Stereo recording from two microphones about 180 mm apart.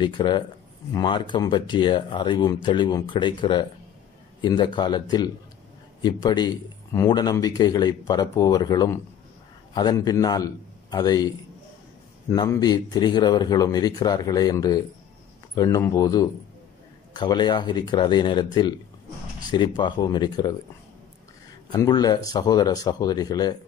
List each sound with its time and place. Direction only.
0.0 s a man's voice: 25° left (ahead or behind)
12.3 s a man's voice: 20° left (ahead or behind)
19.8 s a man's voice: 25° left (ahead or behind)
21.7 s a man's voice: 20° left (ahead or behind)